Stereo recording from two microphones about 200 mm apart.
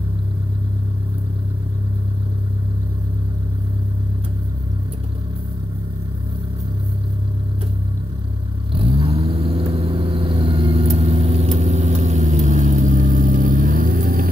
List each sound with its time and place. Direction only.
8.7 s vehicle: 30° right (ahead or behind); by 14.3 s 45° right (ahead or behind)